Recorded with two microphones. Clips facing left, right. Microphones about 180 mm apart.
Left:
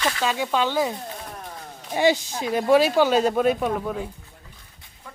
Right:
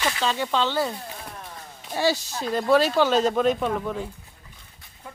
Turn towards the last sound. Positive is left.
turn(degrees=10)  # may be behind; listen again after turning